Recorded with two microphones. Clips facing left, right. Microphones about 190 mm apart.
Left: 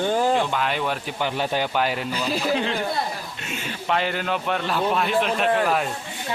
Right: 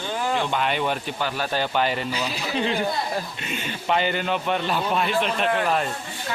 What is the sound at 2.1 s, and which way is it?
Speech, 45° left (ahead or behind).